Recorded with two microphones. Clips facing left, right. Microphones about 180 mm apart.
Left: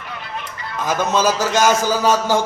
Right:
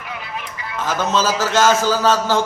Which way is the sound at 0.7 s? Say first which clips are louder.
Left 1 dB; 15° left (ahead or behind).